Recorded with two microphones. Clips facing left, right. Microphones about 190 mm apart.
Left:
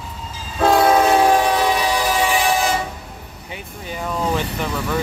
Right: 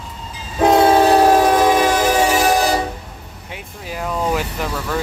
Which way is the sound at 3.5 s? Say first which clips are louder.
Right 1 dB; 5° right (ahead or behind).